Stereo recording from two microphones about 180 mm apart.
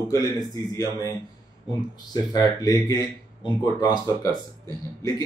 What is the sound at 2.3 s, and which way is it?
Speech, 20° left (ahead or behind).